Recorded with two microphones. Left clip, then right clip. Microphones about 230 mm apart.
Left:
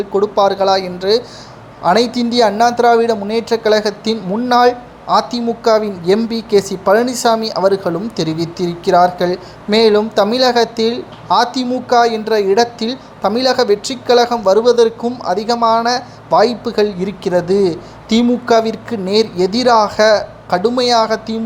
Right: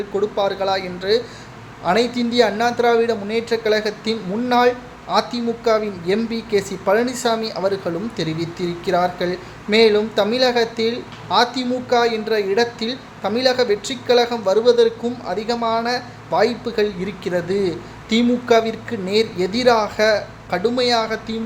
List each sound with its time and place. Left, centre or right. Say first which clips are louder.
0.1 s speech: left 7 dB; centre